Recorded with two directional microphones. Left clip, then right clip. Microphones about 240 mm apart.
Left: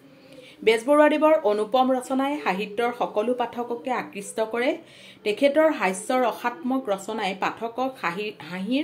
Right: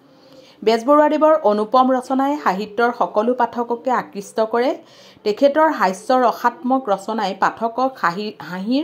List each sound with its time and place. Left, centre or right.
0.7 s speech: centre